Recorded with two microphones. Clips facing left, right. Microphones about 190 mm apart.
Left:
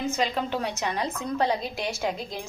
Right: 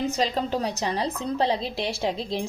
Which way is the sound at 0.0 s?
35° right (ahead or behind).